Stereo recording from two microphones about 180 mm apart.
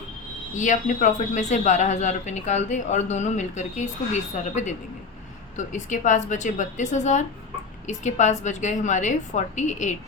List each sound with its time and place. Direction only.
0.5 s a woman's voice: 45° left (ahead or behind)